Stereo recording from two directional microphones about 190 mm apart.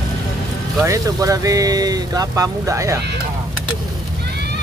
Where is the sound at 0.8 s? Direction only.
15° right (ahead or behind).